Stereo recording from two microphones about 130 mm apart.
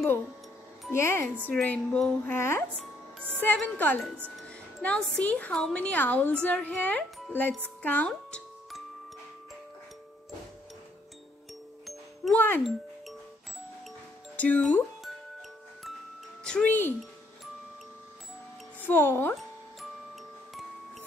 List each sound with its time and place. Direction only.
0.9 s speech: 20° left (ahead or behind)
2.3 s speech: 20° left (ahead or behind)
2.7 s speech: 5° left (ahead or behind)
11.8 s music: centre (ahead or behind)
12.4 s speech: 15° left (ahead or behind)
14.3 s speech: 10° left (ahead or behind)
16.4 s speech: 10° left (ahead or behind)
18.8 s speech: 15° left (ahead or behind)